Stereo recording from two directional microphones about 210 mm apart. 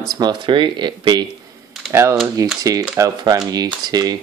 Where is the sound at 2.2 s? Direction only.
15° right (ahead or behind).